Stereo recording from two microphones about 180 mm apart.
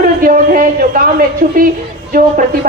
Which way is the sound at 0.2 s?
50° right (ahead or behind).